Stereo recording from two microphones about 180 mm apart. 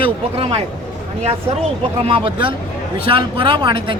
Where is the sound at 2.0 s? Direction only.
30° right (ahead or behind).